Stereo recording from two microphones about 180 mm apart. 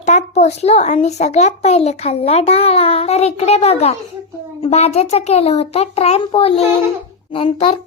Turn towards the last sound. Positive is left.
turn(degrees=30)  # may be behind; listen again after turning